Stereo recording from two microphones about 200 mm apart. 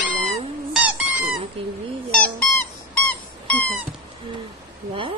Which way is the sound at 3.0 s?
5° left (ahead or behind).